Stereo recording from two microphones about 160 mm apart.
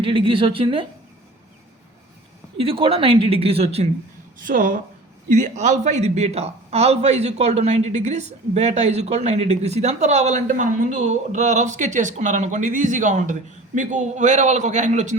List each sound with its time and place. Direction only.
0.0 s a woman's voice: 35° right (ahead or behind)
2.6 s a woman's voice: 35° right (ahead or behind)
4.4 s a woman's voice: 55° right (ahead or behind)